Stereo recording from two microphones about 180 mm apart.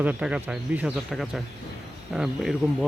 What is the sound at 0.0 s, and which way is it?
Speech, 5° right (ahead or behind).